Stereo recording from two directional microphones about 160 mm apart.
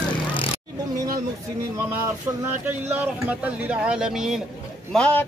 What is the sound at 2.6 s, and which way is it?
Speech, 10° right (ahead or behind).